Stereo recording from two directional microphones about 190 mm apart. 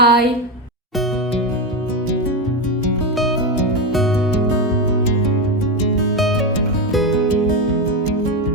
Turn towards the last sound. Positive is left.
turn(degrees=0)  # may be behind; listen again after turning